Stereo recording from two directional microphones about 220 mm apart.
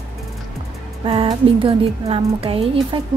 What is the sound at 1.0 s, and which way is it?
Speech, 25° right (ahead or behind).